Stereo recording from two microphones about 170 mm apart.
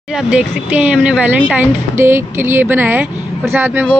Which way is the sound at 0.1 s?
5° right (ahead or behind).